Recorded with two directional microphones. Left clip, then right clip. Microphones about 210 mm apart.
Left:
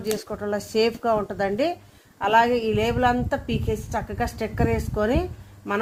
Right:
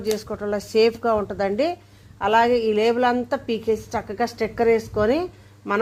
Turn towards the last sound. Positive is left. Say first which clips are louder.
# right 3 dB
turn(degrees=-30)  # may be behind; listen again after turning